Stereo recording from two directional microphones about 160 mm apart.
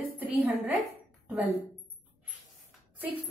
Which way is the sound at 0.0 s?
10° right (ahead or behind).